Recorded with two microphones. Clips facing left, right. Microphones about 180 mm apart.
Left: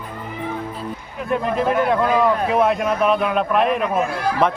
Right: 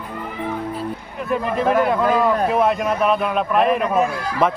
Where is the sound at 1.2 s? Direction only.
Centre (ahead or behind).